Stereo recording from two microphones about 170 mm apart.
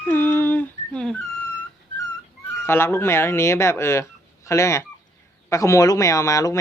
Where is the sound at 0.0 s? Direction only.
10° left (ahead or behind).